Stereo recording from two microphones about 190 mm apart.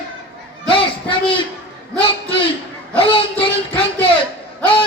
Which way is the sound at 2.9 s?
30° left (ahead or behind).